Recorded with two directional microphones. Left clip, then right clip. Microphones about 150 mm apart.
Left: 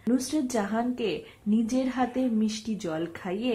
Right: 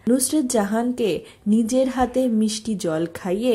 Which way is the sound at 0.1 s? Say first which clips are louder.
Right 7 dB; 35° right (ahead or behind).